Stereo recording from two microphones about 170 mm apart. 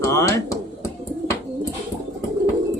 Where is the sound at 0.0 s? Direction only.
20° left (ahead or behind).